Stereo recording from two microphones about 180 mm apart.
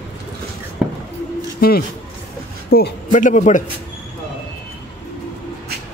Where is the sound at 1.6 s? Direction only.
60° left (ahead or behind).